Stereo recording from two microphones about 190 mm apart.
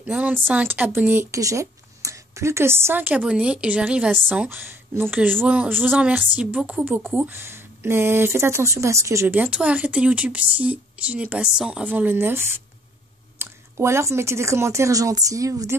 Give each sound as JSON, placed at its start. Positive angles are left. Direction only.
{"t": 0.0, "sound": "a woman's voice", "side_deg": -10}